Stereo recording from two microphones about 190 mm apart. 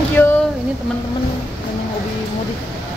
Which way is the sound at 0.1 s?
10° left (ahead or behind).